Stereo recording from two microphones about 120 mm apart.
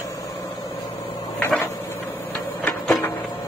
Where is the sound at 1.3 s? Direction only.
15° left (ahead or behind).